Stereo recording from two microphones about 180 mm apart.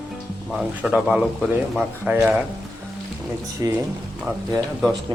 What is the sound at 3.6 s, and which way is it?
Speech, 20° right (ahead or behind).